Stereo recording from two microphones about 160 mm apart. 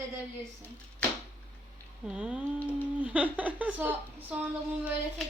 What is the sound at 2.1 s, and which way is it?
A woman's voice, 5° right (ahead or behind).